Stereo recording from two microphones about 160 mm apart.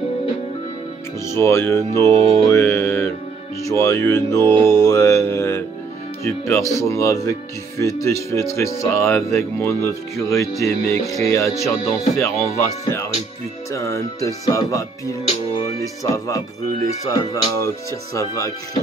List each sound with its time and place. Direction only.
1.2 s speech: 15° left (ahead or behind)